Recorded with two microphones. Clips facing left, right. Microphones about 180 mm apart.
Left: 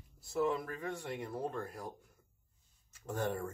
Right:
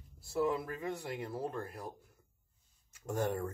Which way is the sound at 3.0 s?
10° right (ahead or behind).